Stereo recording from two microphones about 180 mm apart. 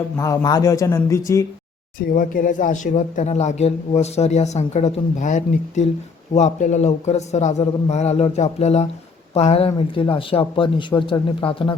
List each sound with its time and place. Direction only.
0.2 s speech: 20° left (ahead or behind)
2.0 s speech: 50° left (ahead or behind); by 11.8 s 25° left (ahead or behind)